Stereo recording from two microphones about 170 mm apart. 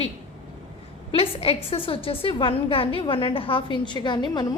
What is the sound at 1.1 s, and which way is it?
A woman's voice, 35° left (ahead or behind).